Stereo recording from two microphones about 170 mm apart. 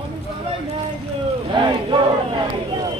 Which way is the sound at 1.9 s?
30° right (ahead or behind).